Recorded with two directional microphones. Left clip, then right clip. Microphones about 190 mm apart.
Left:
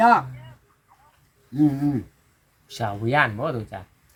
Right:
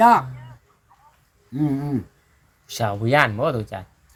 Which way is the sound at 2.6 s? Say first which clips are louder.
Right 3 dB; 50° right (ahead or behind).